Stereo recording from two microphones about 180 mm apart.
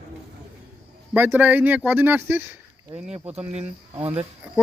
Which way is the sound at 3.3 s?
35° right (ahead or behind).